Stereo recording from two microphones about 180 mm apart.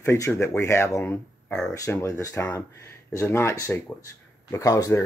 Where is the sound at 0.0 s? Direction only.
15° left (ahead or behind).